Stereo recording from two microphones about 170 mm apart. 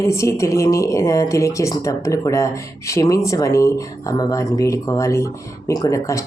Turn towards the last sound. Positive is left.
turn(degrees=20)  # may be behind; listen again after turning